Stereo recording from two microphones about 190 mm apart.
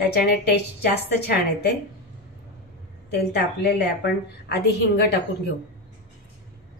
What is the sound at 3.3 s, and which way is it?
A woman's voice, 60° left (ahead or behind).